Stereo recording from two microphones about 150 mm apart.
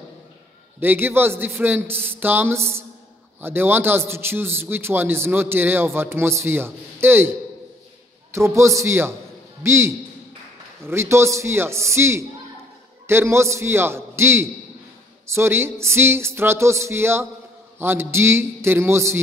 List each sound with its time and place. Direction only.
0.7 s a man's voice: 15° right (ahead or behind)